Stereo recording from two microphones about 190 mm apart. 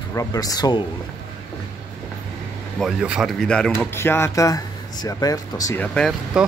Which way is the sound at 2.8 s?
Centre (ahead or behind).